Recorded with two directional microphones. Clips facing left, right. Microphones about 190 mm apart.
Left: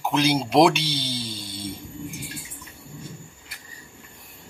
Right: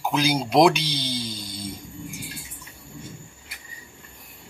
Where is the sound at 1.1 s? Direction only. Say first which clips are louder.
Right 1 dB; 45° right (ahead or behind).